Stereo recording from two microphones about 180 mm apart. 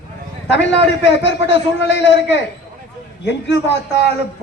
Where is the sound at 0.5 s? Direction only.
75° left (ahead or behind).